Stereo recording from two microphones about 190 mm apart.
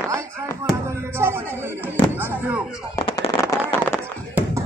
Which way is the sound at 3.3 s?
15° left (ahead or behind).